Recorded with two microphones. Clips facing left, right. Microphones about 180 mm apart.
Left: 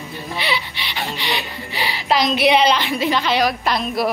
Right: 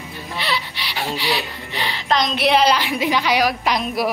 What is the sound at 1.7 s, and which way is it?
A woman's voice, 10° left (ahead or behind).